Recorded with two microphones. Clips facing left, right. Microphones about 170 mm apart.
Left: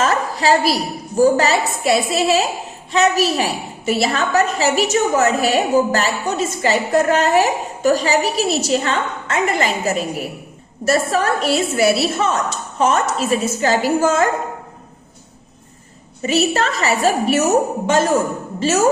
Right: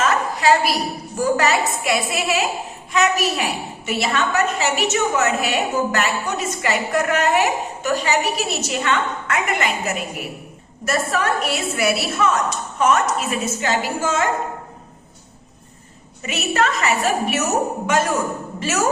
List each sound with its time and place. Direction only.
0.0 s a woman's voice: 35° left (ahead or behind)
16.2 s a woman's voice: 30° left (ahead or behind)